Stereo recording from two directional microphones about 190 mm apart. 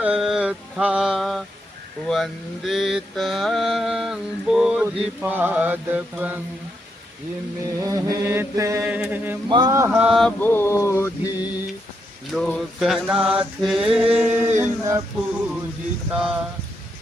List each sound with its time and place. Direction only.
0.0 s mantra: 5° right (ahead or behind)
7.8 s mantra: 15° right (ahead or behind)
9.5 s speech: 20° right (ahead or behind)
9.9 s mantra: 5° right (ahead or behind); by 11.5 s 15° left (ahead or behind)
12.3 s mantra: 5° left (ahead or behind); by 15.0 s 15° right (ahead or behind)
16.1 s mantra: 5° right (ahead or behind)